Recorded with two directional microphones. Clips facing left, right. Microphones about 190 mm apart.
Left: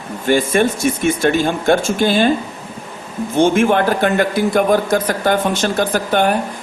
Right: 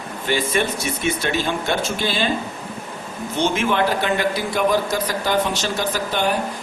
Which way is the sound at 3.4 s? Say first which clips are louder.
Left 7 dB; 50° left (ahead or behind).